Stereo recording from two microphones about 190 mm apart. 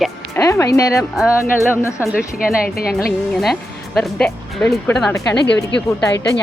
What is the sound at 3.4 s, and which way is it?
Speech, centre (ahead or behind).